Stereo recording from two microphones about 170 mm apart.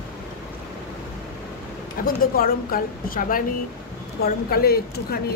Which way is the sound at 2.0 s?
55° left (ahead or behind).